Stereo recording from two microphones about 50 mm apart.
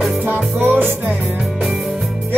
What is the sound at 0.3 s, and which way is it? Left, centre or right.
Music, right.